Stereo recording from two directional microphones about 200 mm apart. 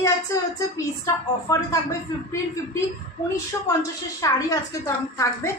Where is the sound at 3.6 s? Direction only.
15° left (ahead or behind).